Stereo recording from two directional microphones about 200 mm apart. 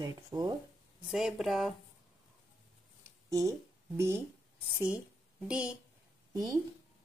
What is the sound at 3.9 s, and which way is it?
Speech, 15° right (ahead or behind).